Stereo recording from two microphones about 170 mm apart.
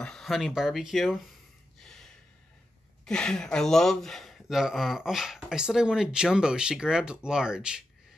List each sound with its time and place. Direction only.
0.0 s speech: 5° left (ahead or behind)
3.1 s speech: 5° left (ahead or behind)